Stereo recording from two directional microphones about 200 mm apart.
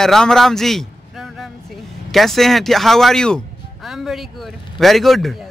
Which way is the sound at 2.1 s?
Centre (ahead or behind).